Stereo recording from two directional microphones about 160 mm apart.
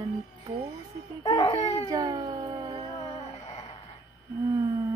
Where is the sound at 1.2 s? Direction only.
20° left (ahead or behind).